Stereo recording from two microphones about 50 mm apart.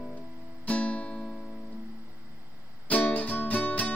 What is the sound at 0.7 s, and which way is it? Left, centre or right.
Music, left.